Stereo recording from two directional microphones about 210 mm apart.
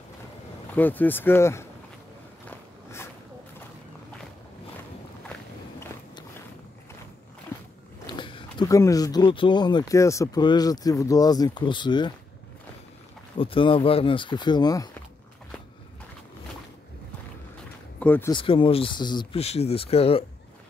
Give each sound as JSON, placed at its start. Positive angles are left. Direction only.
{"t": 0.7, "sound": "speech", "side_deg": 10}
{"t": 2.4, "sound": "a sound", "side_deg": 10}
{"t": 8.1, "sound": "speech", "side_deg": 25}
{"t": 13.4, "sound": "speech", "side_deg": 25}
{"t": 17.9, "sound": "speech", "side_deg": 10}
{"t": 18.3, "sound": "speech", "side_deg": 25}